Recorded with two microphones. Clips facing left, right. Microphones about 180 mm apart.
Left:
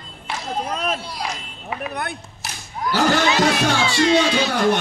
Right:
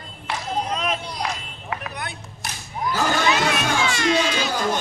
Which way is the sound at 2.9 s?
75° left (ahead or behind).